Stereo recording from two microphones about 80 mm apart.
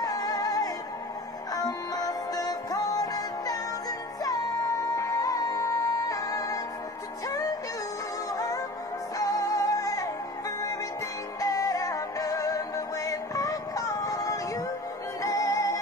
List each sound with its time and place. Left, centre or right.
0.0 s music: left
11.3 s music: left